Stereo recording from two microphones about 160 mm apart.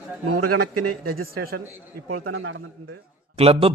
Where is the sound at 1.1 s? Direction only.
70° right (ahead or behind).